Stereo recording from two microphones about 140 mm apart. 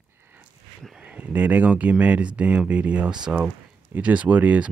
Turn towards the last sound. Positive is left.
turn(degrees=-10)  # may be behind; listen again after turning